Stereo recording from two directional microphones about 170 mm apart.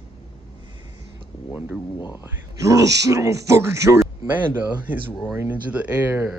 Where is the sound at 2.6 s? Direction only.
20° right (ahead or behind).